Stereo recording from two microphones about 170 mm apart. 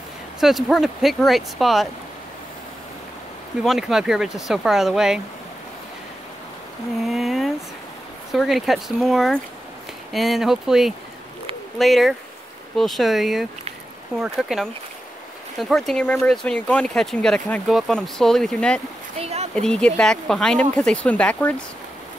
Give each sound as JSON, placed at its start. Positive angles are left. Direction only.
{"t": 0.4, "sound": "speech", "side_deg": 0}
{"t": 3.6, "sound": "speech", "side_deg": 0}
{"t": 7.0, "sound": "speech", "side_deg": 0}
{"t": 19.1, "sound": "a sound", "side_deg": -40}
{"t": 19.5, "sound": "speech", "side_deg": 5}